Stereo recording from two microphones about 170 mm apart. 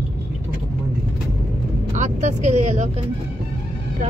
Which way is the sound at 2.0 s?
45° right (ahead or behind).